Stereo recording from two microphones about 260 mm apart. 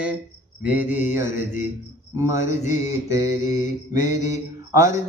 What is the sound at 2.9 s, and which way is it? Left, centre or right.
Mantra, centre.